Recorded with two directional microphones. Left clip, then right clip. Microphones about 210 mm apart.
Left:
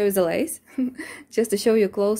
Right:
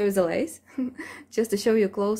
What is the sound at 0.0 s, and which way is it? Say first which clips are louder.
A woman's voice: left 2 dB; 20° left (ahead or behind).